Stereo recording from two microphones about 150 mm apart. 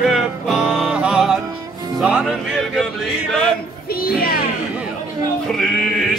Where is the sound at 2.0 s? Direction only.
5° right (ahead or behind).